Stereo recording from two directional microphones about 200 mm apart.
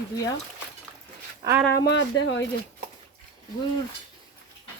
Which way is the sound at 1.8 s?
65° left (ahead or behind).